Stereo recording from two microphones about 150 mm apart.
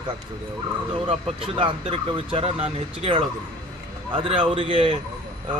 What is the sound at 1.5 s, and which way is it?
Speech, 35° right (ahead or behind).